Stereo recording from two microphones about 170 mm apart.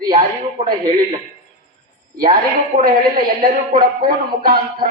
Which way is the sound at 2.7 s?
55° right (ahead or behind).